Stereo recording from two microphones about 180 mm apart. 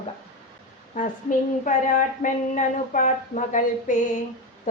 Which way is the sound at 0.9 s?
45° left (ahead or behind).